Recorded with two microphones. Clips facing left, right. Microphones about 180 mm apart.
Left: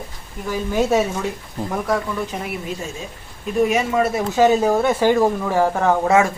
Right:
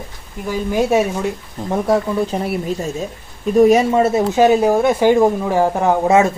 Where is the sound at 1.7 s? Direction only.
25° right (ahead or behind).